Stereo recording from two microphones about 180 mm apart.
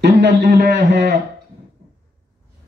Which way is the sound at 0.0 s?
70° right (ahead or behind).